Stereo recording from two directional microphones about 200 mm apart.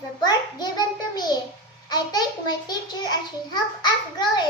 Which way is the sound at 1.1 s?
20° left (ahead or behind).